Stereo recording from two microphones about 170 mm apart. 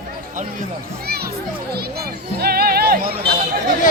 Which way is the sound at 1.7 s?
65° right (ahead or behind).